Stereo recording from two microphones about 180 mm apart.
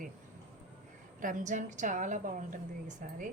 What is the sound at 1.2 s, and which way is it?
A woman's voice, 45° right (ahead or behind).